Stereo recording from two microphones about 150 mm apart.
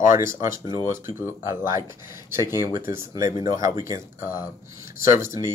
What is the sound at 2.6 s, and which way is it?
A man's voice, 20° right (ahead or behind).